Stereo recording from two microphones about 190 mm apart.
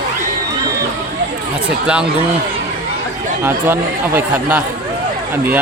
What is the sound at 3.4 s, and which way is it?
Speech, 10° right (ahead or behind).